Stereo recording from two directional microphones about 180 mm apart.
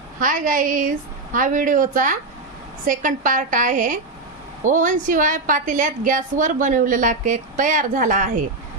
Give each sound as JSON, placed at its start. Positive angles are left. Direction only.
{"t": 0.2, "sound": "a woman's voice", "side_deg": -45}